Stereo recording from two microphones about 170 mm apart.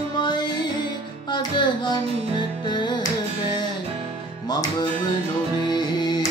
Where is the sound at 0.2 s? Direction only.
25° left (ahead or behind).